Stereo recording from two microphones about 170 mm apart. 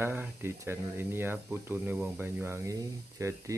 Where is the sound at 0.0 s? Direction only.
15° right (ahead or behind).